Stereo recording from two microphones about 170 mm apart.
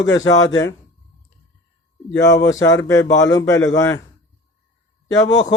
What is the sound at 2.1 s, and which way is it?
Speech, 90° left.